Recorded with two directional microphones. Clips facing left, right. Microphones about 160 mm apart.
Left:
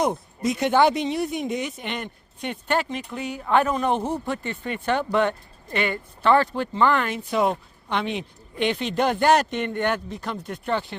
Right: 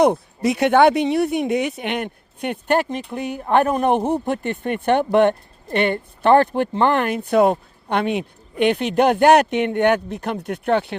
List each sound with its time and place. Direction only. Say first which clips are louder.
0.0 s a man's voice: right 7 dB; 70° right (ahead or behind)